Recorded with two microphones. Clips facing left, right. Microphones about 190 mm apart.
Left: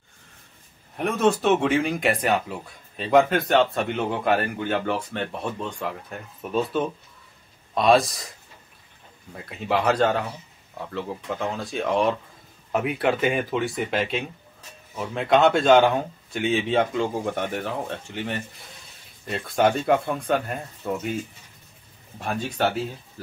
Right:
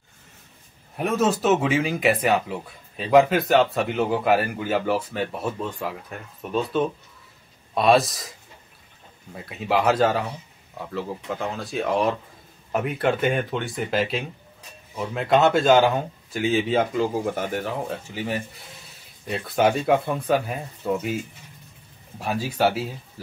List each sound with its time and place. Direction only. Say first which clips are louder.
0.9 s speech: left 1 dB; 5° right (ahead or behind)
9.3 s speech: right 1 dB; centre (ahead or behind)
22.2 s speech: right 2 dB; 5° right (ahead or behind)